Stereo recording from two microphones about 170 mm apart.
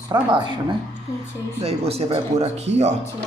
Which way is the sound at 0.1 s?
25° right (ahead or behind).